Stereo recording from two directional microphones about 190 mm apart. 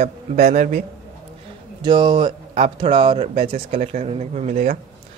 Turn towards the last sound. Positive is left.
turn(degrees=-40)  # may be behind; listen again after turning